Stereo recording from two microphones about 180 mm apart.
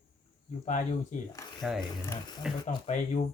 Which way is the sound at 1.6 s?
Centre (ahead or behind).